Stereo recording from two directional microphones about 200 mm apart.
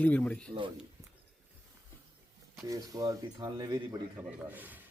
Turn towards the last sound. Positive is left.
turn(degrees=-10)  # may be behind; listen again after turning